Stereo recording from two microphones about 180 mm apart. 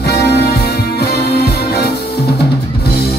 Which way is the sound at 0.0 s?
65° left (ahead or behind).